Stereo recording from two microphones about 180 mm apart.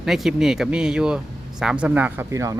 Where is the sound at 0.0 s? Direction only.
Centre (ahead or behind).